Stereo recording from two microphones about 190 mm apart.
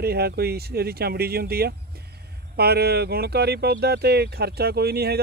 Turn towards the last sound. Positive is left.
turn(degrees=-55)  # may be behind; listen again after turning